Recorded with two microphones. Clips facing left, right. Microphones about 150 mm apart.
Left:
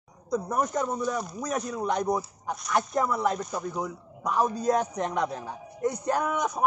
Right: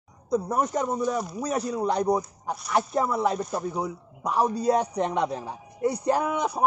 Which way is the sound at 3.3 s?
10° right (ahead or behind).